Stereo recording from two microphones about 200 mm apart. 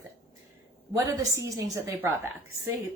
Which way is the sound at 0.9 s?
15° right (ahead or behind).